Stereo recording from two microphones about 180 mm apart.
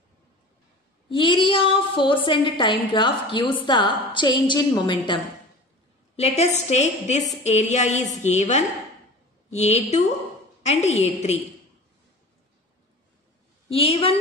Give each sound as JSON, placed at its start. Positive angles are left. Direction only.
{"t": 1.0, "sound": "a woman's voice", "side_deg": 25}
{"t": 6.1, "sound": "a woman's voice", "side_deg": 35}
{"t": 13.7, "sound": "a woman's voice", "side_deg": 30}